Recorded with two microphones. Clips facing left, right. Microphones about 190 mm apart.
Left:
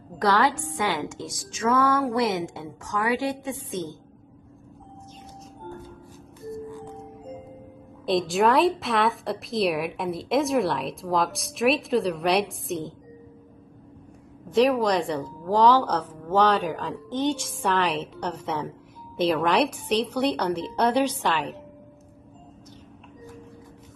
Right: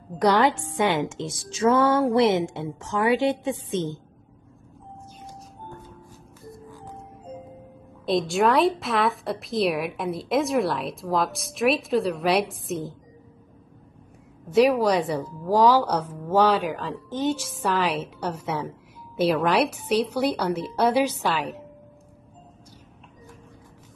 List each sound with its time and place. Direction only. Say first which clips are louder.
0.2 s a woman's voice: right 2 dB; 20° right (ahead or behind)
8.0 s a woman's voice: even; centre (ahead or behind)
14.5 s a woman's voice: right 2 dB; 5° right (ahead or behind)